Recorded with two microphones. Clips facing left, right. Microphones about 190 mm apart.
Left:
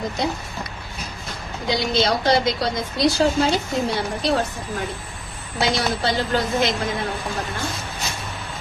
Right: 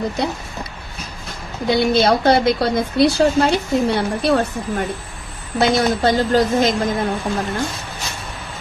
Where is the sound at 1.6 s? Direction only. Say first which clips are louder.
Right 6 dB; 55° right (ahead or behind).